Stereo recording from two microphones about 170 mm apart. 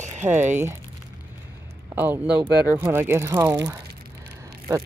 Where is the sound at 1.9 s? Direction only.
10° right (ahead or behind).